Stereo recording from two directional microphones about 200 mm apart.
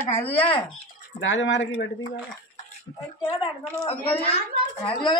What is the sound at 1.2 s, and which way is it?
Speech, 70° left (ahead or behind).